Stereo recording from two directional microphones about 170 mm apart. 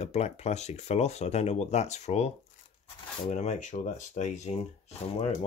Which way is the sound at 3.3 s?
45° left (ahead or behind).